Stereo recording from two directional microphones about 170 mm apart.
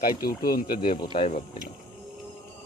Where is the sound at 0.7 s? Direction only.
50° left (ahead or behind).